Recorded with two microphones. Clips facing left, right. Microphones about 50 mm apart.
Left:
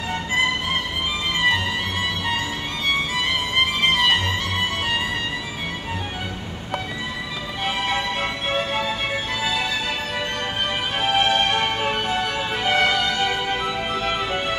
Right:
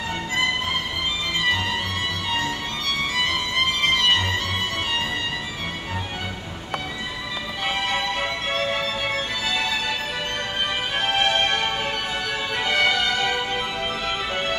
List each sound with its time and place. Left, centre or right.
7.6 s music: centre
8.5 s music: centre
11.0 s music: centre
11.5 s music: centre